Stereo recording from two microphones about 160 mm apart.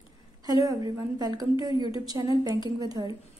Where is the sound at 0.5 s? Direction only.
20° right (ahead or behind).